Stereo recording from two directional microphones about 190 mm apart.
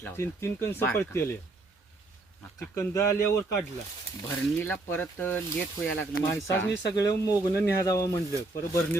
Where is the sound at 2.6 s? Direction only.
10° left (ahead or behind).